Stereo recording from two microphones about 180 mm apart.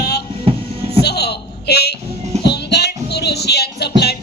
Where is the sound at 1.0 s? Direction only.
65° left (ahead or behind).